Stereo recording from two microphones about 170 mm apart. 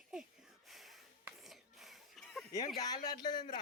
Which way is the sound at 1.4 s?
Centre (ahead or behind).